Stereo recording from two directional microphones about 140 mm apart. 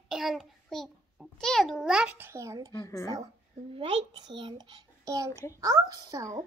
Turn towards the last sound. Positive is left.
turn(degrees=-25)  # may be behind; listen again after turning